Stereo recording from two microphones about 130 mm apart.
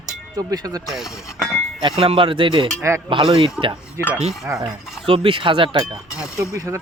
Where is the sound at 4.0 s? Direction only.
20° right (ahead or behind).